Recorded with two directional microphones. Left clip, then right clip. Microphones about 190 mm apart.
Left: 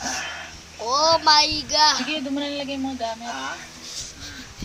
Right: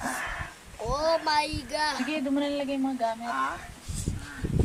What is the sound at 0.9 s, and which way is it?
Speech, 5° right (ahead or behind).